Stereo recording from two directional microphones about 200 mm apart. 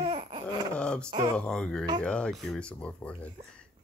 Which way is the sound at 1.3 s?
5° left (ahead or behind).